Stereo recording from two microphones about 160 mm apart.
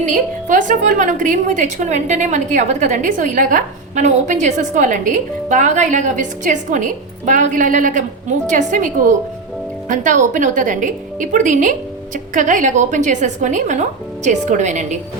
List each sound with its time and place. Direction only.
0.0 s a woman's voice: 50° right (ahead or behind)